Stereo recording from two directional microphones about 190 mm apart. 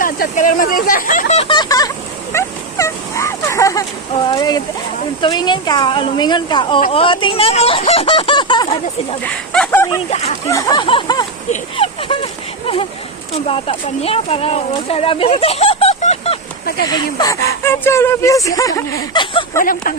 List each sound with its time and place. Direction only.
0.0 s speech: 45° left (ahead or behind); by 8.6 s 25° left (ahead or behind)
9.2 s speech: 5° left (ahead or behind); by 16.4 s 35° left (ahead or behind)
16.9 s speech: 20° left (ahead or behind)
19.5 s speech: 45° left (ahead or behind)